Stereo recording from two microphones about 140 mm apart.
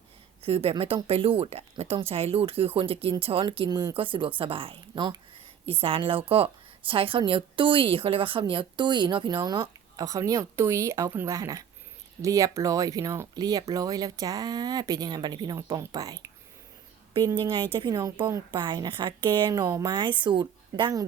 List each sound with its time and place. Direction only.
0.4 s a woman's voice: 45° right (ahead or behind); by 16.3 s 25° right (ahead or behind)
17.4 s a woman's voice: 35° right (ahead or behind)